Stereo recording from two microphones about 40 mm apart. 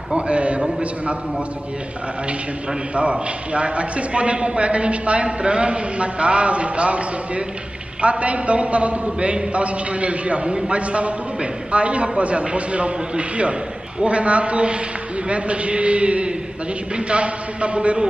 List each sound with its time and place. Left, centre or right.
0.1 s a man's voice: right
2.9 s a man's voice: right